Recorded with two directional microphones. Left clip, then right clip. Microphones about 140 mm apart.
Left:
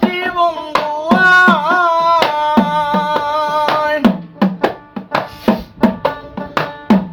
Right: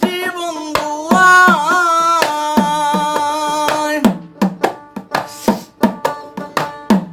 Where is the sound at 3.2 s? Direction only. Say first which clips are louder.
Left 1 dB; 30° right (ahead or behind).